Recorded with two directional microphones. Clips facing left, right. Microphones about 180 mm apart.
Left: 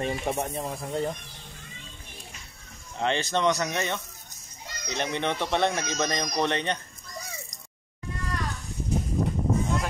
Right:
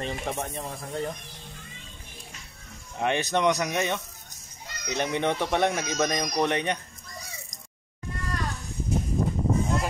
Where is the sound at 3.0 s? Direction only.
15° right (ahead or behind).